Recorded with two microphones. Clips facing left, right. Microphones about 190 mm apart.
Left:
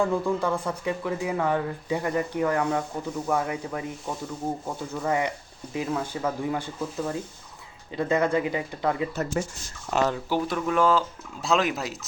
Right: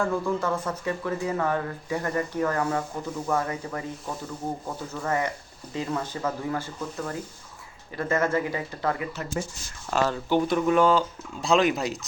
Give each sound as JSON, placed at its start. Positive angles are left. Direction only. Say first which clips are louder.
{"t": 0.0, "sound": "speech", "louder": "left 2 dB", "side_deg": 15}
{"t": 5.0, "sound": "speech", "louder": "left 1 dB", "side_deg": 15}
{"t": 7.9, "sound": "speech", "louder": "left 2 dB", "side_deg": 15}
{"t": 9.4, "sound": "speech", "louder": "left 2 dB", "side_deg": 65}
{"t": 9.9, "sound": "speech", "louder": "left 1 dB", "side_deg": 20}
{"t": 10.2, "sound": "speech", "louder": "right 4 dB", "side_deg": 5}